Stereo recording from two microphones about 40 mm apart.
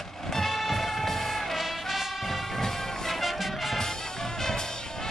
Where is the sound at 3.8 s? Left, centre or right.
Centre.